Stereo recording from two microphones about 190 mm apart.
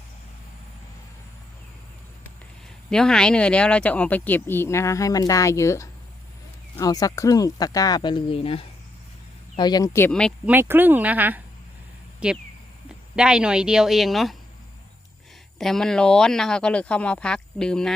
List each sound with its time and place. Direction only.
2.9 s speech: 5° left (ahead or behind)
10.1 s speech: 5° left (ahead or behind)
10.4 s speech: 10° right (ahead or behind)
15.5 s speech: centre (ahead or behind)